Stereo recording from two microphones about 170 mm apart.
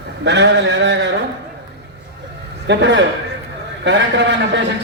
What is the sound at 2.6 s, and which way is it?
A man's voice, 90° right.